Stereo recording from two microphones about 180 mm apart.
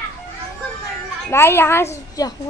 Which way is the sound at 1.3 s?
15° left (ahead or behind).